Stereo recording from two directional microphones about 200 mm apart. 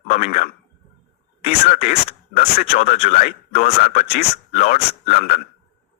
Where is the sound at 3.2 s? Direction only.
35° left (ahead or behind).